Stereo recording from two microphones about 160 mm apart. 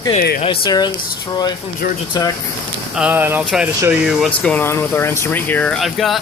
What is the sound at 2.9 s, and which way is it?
Speech, 10° right (ahead or behind).